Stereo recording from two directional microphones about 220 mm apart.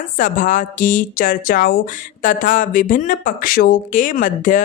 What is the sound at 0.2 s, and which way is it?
Speech, 35° left (ahead or behind).